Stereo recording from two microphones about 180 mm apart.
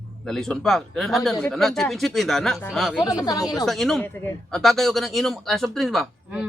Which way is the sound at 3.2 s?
20° left (ahead or behind).